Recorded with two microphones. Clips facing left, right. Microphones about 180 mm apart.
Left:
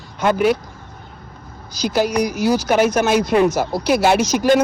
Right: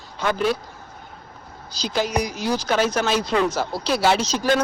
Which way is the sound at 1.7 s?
10° left (ahead or behind).